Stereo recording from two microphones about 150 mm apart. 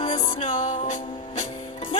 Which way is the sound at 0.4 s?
55° left (ahead or behind).